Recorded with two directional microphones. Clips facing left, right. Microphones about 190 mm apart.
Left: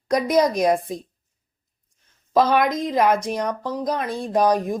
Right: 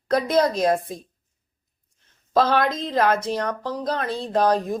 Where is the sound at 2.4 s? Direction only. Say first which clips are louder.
Left 2 dB; 15° left (ahead or behind).